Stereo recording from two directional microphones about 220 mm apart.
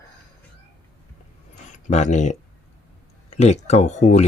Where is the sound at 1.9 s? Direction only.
30° left (ahead or behind).